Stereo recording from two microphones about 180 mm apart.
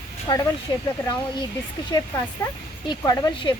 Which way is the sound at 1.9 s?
15° left (ahead or behind).